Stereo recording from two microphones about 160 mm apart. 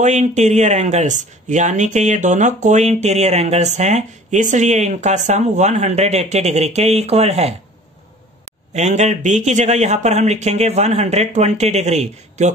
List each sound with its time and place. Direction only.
0.0 s speech: 45° right (ahead or behind)
8.7 s speech: 45° right (ahead or behind)